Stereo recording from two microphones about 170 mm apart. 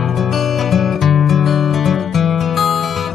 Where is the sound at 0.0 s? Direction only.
Centre (ahead or behind).